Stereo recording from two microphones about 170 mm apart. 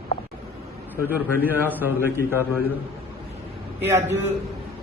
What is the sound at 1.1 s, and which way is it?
A man's voice, 10° right (ahead or behind).